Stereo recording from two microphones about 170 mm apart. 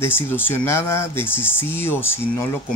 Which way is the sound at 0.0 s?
10° left (ahead or behind).